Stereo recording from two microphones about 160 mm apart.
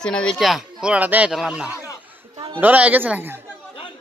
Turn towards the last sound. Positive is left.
turn(degrees=-10)  # may be behind; listen again after turning